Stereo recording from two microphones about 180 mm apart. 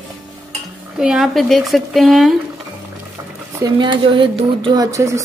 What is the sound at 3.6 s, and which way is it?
Speech, 25° right (ahead or behind).